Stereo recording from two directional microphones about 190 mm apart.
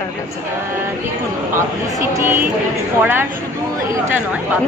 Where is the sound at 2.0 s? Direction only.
15° right (ahead or behind).